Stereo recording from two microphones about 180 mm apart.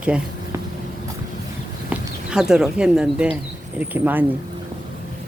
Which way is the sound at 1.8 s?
5° right (ahead or behind).